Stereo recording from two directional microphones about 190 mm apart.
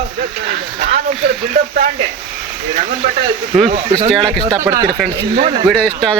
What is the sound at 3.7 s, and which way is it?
Speech, 35° right (ahead or behind).